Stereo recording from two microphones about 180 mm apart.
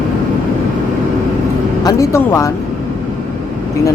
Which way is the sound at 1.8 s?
20° left (ahead or behind).